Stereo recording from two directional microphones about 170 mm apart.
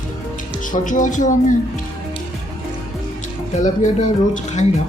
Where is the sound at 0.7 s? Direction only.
50° left (ahead or behind).